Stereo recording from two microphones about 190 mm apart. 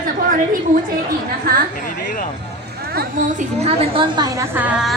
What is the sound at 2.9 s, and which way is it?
A woman's voice, 35° right (ahead or behind).